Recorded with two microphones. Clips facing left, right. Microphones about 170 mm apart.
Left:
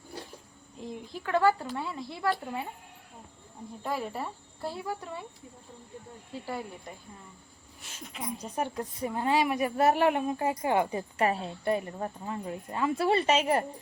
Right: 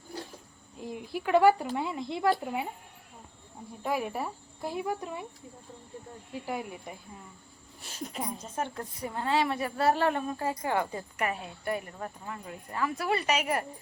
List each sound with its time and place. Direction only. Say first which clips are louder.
0.8 s speech: right 3 dB; 5° right (ahead or behind)
3.8 s speech: right 2 dB; 15° right (ahead or behind)
6.3 s speech: right 1 dB; 15° right (ahead or behind)
7.8 s speech: right 7 dB; 35° right (ahead or behind)
8.5 s speech: left 3 dB; 15° left (ahead or behind)
11.2 s speech: left 5 dB; 30° left (ahead or behind)